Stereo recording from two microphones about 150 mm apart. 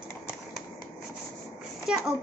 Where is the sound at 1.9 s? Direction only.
5° right (ahead or behind).